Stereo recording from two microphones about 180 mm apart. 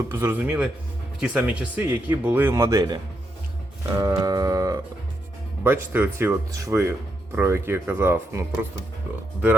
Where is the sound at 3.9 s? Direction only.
20° right (ahead or behind).